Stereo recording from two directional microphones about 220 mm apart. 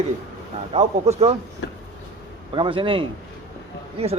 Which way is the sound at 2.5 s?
25° right (ahead or behind).